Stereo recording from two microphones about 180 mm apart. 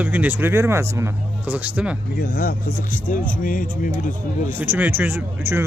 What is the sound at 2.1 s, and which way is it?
Speech, 55° left (ahead or behind).